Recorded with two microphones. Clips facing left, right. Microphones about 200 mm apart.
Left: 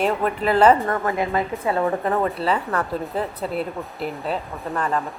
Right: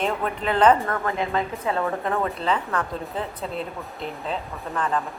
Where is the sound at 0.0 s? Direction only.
5° left (ahead or behind).